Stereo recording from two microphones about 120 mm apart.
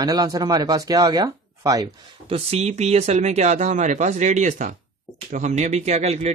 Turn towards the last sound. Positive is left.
turn(degrees=-65)  # may be behind; listen again after turning